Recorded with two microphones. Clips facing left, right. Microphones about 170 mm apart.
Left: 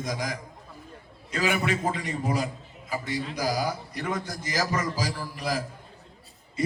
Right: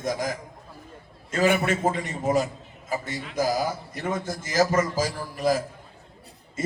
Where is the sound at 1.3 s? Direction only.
45° right (ahead or behind).